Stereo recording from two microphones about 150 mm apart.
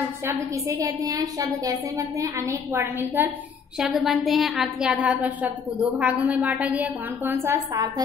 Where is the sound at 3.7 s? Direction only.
Centre (ahead or behind).